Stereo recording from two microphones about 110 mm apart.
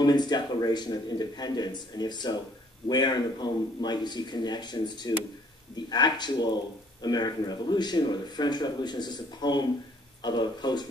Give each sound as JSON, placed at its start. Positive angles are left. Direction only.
{"t": 0.0, "sound": "speech", "side_deg": 40}